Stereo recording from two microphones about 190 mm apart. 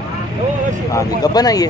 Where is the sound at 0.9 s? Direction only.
20° left (ahead or behind).